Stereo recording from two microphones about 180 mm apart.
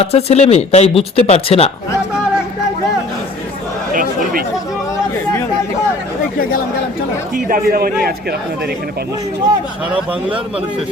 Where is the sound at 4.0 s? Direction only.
50° right (ahead or behind).